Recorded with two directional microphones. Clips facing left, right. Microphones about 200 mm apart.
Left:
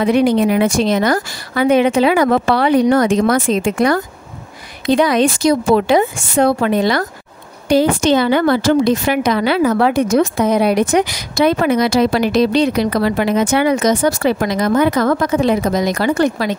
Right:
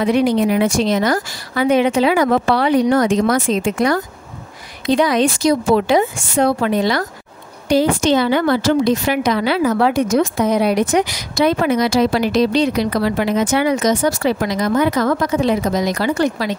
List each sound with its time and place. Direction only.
0.0 s a woman's voice: 60° left (ahead or behind)